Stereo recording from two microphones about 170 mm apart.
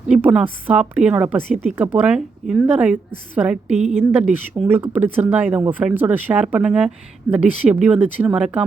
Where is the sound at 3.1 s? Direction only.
50° left (ahead or behind).